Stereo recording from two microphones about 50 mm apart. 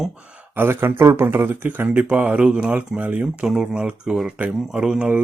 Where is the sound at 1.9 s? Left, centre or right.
Right.